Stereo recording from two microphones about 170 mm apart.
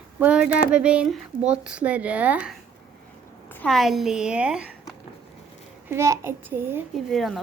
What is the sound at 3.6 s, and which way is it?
Speech, centre (ahead or behind).